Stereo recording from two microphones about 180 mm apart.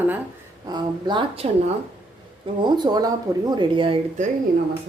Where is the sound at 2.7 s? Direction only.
20° right (ahead or behind).